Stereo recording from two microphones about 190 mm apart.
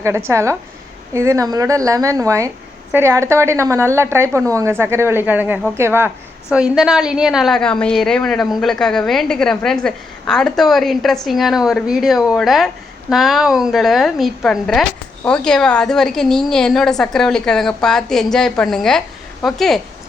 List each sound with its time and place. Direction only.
0.0 s a woman's voice: 15° right (ahead or behind)